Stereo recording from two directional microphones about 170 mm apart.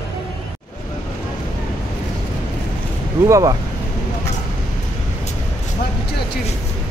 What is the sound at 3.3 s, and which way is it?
Speech, 20° right (ahead or behind).